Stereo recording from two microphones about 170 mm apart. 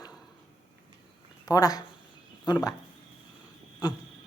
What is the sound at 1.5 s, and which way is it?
Speech, 20° left (ahead or behind).